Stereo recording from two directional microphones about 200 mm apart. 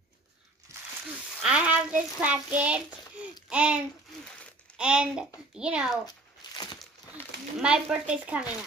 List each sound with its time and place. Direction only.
0.7 s a sound: 15° right (ahead or behind)
1.4 s child singing: 5° right (ahead or behind)
3.4 s a sound: 5° right (ahead or behind)
4.7 s child singing: 5° right (ahead or behind)
6.4 s crumpling: 20° left (ahead or behind)
6.8 s speech: centre (ahead or behind)